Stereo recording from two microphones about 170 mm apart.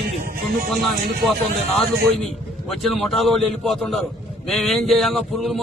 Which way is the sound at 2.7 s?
Centre (ahead or behind).